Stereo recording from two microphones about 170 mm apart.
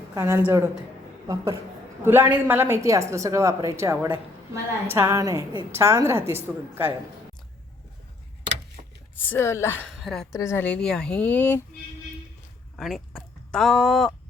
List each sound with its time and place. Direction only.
0.1 s a woman's voice: 15° right (ahead or behind)
2.0 s a woman's voice: 10° right (ahead or behind)
9.3 s speech: 15° left (ahead or behind)
9.9 s a woman's voice: centre (ahead or behind)
10.3 s speech: 15° left (ahead or behind)
12.7 s speech: centre (ahead or behind)